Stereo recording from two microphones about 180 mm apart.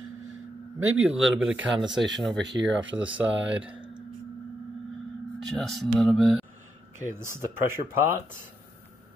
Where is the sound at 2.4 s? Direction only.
85° right.